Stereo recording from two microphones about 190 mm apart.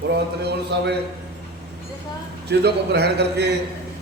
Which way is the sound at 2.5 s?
60° right (ahead or behind).